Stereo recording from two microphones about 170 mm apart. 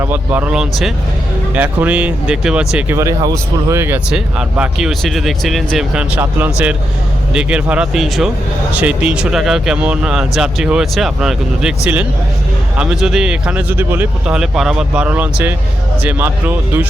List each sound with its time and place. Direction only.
0.0 s speech: 10° right (ahead or behind)
2.7 s speech: 15° right (ahead or behind)
12.7 s speech: 5° right (ahead or behind)